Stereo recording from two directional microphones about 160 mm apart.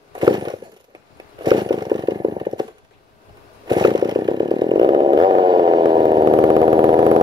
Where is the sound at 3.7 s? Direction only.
25° right (ahead or behind).